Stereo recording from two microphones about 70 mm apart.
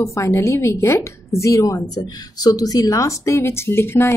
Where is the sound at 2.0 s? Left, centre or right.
Left.